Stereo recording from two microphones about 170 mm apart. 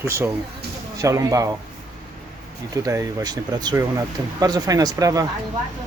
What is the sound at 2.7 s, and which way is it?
Speech, 20° right (ahead or behind).